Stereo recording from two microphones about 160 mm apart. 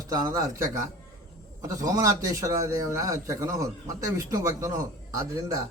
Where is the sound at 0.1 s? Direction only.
25° right (ahead or behind).